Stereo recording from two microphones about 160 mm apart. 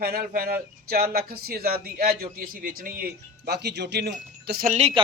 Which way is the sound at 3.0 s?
90° right.